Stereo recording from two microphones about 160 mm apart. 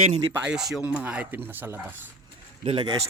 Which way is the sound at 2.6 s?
35° right (ahead or behind).